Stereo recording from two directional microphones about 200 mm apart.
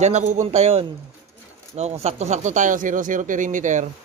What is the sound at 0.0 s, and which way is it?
Speech, 35° right (ahead or behind).